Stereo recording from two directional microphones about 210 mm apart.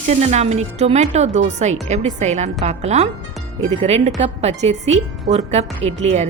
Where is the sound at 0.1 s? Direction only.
30° right (ahead or behind).